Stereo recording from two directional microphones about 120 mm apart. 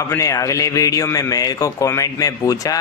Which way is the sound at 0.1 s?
25° left (ahead or behind).